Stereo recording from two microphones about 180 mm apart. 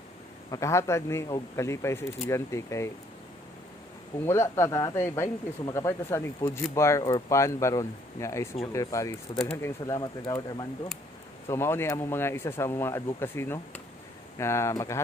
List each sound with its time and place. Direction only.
0.5 s speech: 15° left (ahead or behind)
4.3 s speech: 15° left (ahead or behind)